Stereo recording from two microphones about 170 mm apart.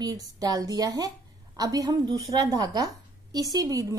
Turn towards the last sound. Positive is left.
turn(degrees=-20)  # may be behind; listen again after turning